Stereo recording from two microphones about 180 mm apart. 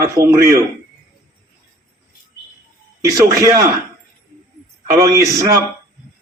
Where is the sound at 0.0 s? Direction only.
15° right (ahead or behind).